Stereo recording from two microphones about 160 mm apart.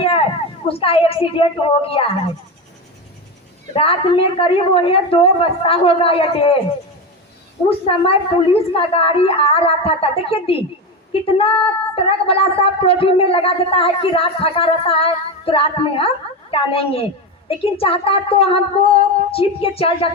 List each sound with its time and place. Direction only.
0.7 s a woman's voice: 35° left (ahead or behind)
3.8 s a woman's voice: 35° left (ahead or behind)
7.9 s a woman's voice: 35° left (ahead or behind)